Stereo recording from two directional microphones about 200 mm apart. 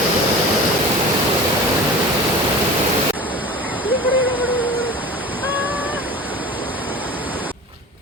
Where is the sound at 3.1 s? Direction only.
10° right (ahead or behind).